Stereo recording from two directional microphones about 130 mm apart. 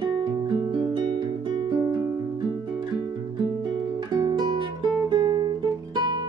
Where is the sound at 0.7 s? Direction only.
35° right (ahead or behind).